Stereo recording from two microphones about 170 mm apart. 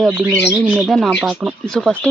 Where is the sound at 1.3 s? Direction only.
10° right (ahead or behind).